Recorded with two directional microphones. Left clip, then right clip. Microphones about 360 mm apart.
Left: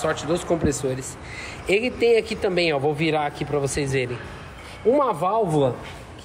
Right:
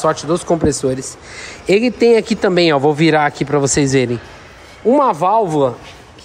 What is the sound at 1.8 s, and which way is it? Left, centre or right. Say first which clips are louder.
Speech: right 7 dB; right.